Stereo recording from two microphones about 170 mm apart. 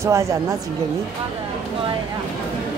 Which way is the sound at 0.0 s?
15° right (ahead or behind).